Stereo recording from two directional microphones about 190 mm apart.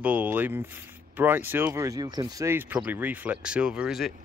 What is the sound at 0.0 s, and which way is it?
A man's voice, 10° right (ahead or behind).